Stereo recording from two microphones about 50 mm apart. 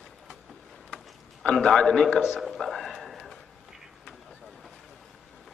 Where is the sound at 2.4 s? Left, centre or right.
Centre.